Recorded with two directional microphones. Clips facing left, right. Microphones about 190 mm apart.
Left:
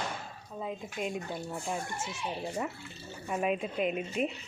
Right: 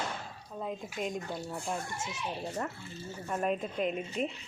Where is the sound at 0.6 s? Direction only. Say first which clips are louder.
Even; centre (ahead or behind).